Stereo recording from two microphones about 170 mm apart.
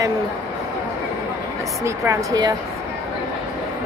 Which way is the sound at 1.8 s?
20° right (ahead or behind).